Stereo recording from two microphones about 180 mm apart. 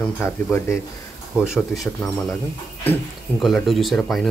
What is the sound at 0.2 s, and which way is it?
Speech, 15° left (ahead or behind).